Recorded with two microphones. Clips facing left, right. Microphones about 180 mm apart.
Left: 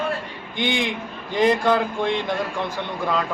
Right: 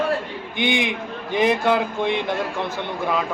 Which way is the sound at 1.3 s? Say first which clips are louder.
Even; 5° right (ahead or behind).